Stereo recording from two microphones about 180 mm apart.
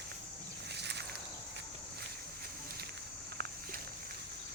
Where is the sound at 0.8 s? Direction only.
70° right (ahead or behind).